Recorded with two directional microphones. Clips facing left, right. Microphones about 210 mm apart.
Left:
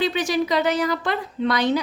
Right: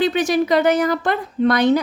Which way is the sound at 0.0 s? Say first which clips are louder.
Right 4 dB; 50° right (ahead or behind).